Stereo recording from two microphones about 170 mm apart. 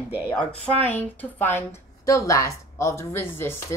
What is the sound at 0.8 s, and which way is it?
Speech, 10° left (ahead or behind).